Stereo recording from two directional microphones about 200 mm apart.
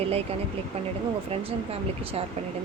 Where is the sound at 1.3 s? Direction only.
30° right (ahead or behind).